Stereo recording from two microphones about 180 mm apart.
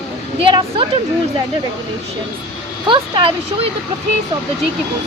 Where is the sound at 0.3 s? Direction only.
30° right (ahead or behind).